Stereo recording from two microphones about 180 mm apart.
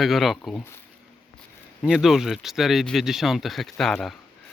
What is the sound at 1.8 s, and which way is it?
Speech, 5° right (ahead or behind).